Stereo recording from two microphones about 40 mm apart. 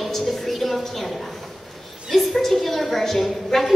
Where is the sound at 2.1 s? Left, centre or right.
Centre.